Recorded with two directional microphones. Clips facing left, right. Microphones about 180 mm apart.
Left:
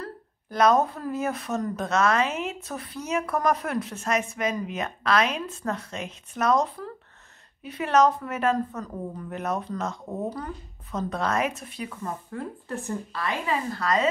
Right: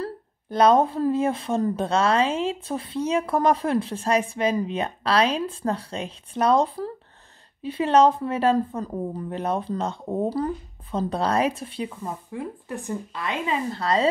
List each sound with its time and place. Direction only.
0.0 s speech: 30° right (ahead or behind)
12.0 s speech: 10° right (ahead or behind); by 14.0 s 30° right (ahead or behind)